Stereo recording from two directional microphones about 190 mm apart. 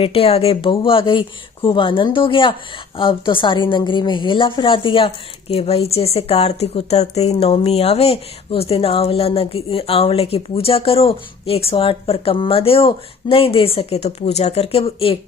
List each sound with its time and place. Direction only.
0.0 s a woman's voice: 30° left (ahead or behind)